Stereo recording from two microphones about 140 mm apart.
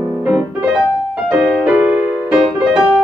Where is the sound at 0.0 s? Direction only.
15° right (ahead or behind).